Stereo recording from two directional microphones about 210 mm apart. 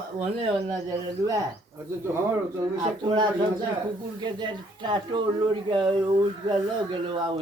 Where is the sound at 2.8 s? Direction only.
20° right (ahead or behind).